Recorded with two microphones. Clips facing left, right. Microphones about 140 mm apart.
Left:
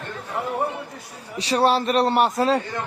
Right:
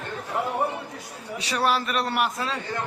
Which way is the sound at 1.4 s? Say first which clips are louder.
Left 6 dB; 30° left (ahead or behind).